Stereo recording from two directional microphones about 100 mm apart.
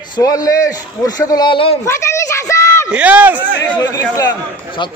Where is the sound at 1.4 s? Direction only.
60° left (ahead or behind).